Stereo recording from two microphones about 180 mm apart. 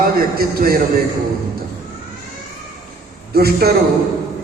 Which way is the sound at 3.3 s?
60° right (ahead or behind).